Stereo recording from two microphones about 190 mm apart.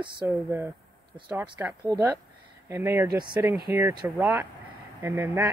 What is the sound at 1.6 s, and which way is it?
Speech, 15° right (ahead or behind).